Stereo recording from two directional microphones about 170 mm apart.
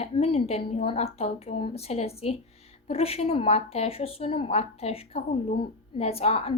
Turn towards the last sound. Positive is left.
turn(degrees=35)  # may be behind; listen again after turning